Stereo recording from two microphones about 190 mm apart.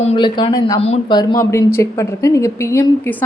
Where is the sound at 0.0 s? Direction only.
30° left (ahead or behind).